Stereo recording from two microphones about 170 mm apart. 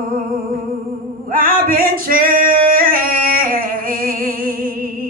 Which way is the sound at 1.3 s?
55° right (ahead or behind).